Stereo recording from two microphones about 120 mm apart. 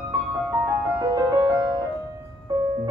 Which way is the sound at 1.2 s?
30° right (ahead or behind).